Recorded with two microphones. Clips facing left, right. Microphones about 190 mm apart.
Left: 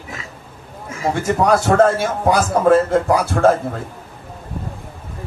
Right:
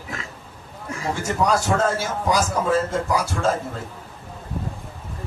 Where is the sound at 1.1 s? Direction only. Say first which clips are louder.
Left 5 dB; 60° left (ahead or behind).